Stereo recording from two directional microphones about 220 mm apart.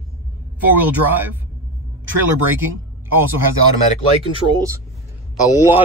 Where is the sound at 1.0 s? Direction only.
10° right (ahead or behind).